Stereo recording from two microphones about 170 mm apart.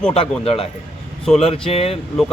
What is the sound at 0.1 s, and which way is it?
Speech, 35° left (ahead or behind).